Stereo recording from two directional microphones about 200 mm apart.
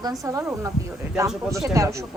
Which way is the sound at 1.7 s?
15° right (ahead or behind).